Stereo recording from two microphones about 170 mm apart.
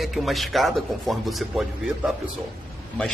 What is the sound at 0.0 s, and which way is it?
A man's voice, centre (ahead or behind).